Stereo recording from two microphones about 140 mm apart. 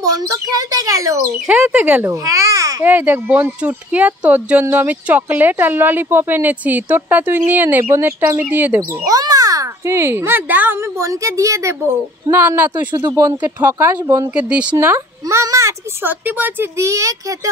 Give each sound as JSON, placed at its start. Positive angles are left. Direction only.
{"t": 0.0, "sound": "a child's voice", "side_deg": -25}
{"t": 1.5, "sound": "speech", "side_deg": -10}
{"t": 2.2, "sound": "babbling", "side_deg": -20}
{"t": 2.8, "sound": "speech", "side_deg": -15}
{"t": 9.0, "sound": "a child's voice", "side_deg": -25}
{"t": 12.9, "sound": "a child's voice", "side_deg": -25}
{"t": 14.3, "sound": "speech", "side_deg": -10}
{"t": 14.8, "sound": "a child's voice", "side_deg": -20}